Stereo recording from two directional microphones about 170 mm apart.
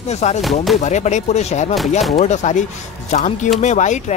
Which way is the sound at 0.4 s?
Centre (ahead or behind).